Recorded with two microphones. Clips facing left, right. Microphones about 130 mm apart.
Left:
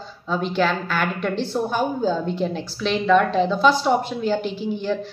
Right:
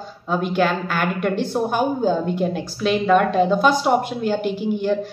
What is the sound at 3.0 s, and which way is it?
A woman's voice, 50° right (ahead or behind).